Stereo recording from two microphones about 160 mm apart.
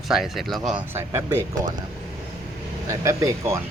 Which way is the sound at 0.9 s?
15° right (ahead or behind).